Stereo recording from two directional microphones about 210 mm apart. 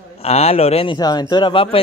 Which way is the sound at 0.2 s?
30° left (ahead or behind).